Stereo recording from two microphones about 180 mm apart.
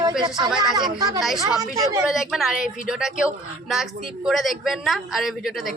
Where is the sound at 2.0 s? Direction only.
Centre (ahead or behind).